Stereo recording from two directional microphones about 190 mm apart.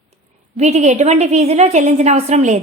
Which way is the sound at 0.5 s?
35° right (ahead or behind).